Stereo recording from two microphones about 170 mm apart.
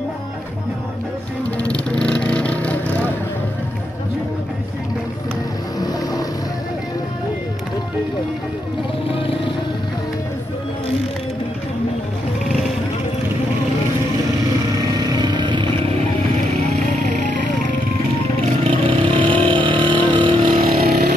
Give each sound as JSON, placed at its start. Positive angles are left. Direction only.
{"t": 1.6, "sound": "vehicle", "side_deg": 5}
{"t": 5.8, "sound": "vehicle", "side_deg": 20}
{"t": 15.0, "sound": "vehicle", "side_deg": -25}
{"t": 18.6, "sound": "vehicle", "side_deg": -35}
{"t": 20.4, "sound": "vehicle", "side_deg": -55}